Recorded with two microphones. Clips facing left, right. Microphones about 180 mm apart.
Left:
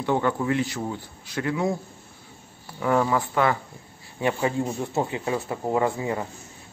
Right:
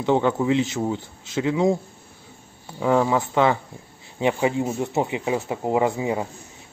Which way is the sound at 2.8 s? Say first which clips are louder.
Right 3 dB; 20° right (ahead or behind).